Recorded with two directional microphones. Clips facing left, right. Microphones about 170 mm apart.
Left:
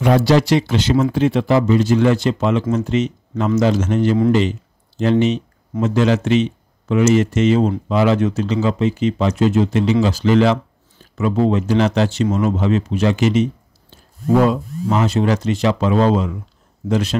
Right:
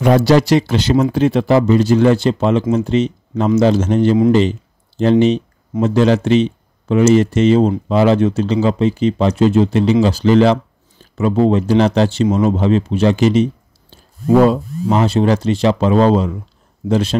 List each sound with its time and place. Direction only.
0.0 s speech: 40° right (ahead or behind)
4.3 s a sound: 35° right (ahead or behind)
5.8 s speech: 35° right (ahead or behind)